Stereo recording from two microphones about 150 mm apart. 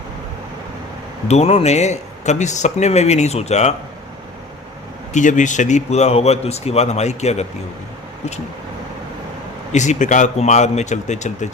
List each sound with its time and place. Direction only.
1.3 s speech: 45° left (ahead or behind)
5.1 s speech: 55° left (ahead or behind)
9.7 s speech: 50° left (ahead or behind)